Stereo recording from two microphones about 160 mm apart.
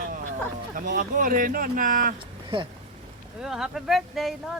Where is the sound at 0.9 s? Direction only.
60° right (ahead or behind).